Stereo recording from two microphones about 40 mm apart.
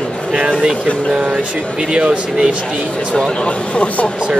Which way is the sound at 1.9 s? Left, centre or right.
Centre.